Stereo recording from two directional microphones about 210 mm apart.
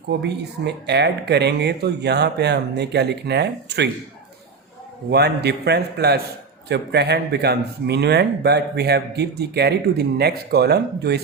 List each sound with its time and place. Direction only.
0.1 s speech: 55° right (ahead or behind)
5.1 s speech: 50° right (ahead or behind)